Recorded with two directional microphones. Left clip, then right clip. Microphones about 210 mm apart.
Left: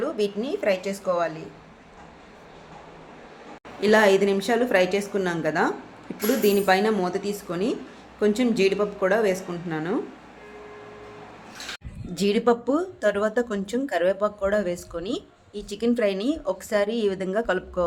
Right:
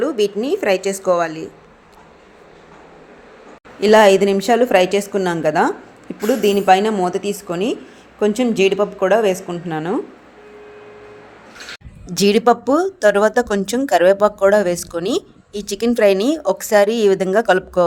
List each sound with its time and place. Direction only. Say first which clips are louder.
0.0 s a woman's voice: right 8 dB; 35° right (ahead or behind)
3.8 s a woman's voice: right 8 dB; 30° right (ahead or behind)
12.1 s speech: right 8 dB; 45° right (ahead or behind)